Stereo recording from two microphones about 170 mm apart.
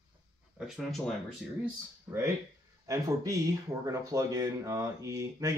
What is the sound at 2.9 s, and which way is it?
Speech, 20° right (ahead or behind).